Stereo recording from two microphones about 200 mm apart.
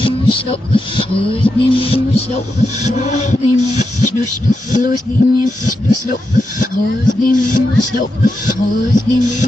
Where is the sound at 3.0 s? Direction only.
35° left (ahead or behind).